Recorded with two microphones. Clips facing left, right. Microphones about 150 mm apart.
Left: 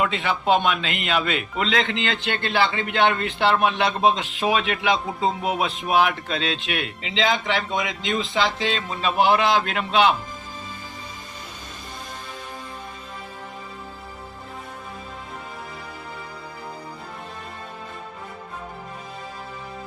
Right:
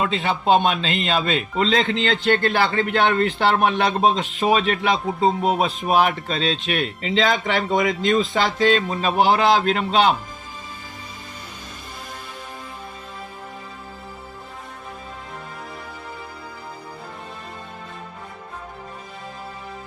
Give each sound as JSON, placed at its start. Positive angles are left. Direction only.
{"t": 0.0, "sound": "a man's voice", "side_deg": -30}